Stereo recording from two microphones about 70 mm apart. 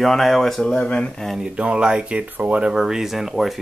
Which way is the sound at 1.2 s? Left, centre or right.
Centre.